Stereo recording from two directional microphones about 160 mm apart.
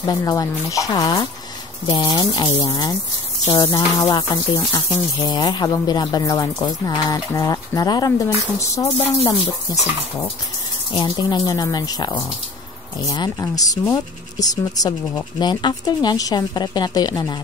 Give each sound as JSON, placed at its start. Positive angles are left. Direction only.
{"t": 0.0, "sound": "speech", "side_deg": 20}
{"t": 4.0, "sound": "speech", "side_deg": 20}